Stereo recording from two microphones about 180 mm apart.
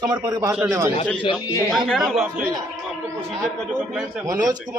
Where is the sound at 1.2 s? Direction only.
25° left (ahead or behind).